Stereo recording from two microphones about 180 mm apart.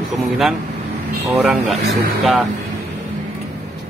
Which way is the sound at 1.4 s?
Centre (ahead or behind).